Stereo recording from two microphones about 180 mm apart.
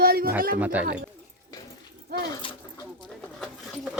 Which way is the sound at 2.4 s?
30° left (ahead or behind).